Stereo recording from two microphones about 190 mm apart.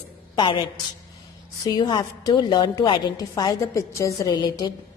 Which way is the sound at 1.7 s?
25° left (ahead or behind).